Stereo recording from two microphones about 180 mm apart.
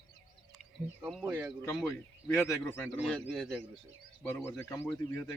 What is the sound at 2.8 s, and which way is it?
Speech, centre (ahead or behind).